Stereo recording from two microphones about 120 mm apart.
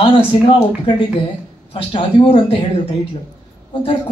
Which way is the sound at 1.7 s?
45° left (ahead or behind).